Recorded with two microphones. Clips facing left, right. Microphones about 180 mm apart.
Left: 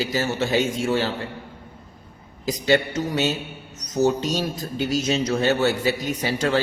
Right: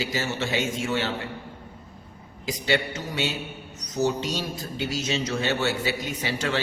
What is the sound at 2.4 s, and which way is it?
Speech, 40° left (ahead or behind).